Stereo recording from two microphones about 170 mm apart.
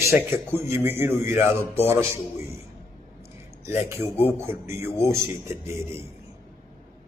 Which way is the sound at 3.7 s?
15° right (ahead or behind).